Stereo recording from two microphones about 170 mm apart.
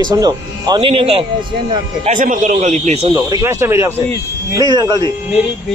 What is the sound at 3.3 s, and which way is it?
A man's voice, 15° right (ahead or behind).